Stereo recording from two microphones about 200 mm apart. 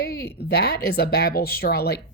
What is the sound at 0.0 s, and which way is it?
Speech, 50° left (ahead or behind).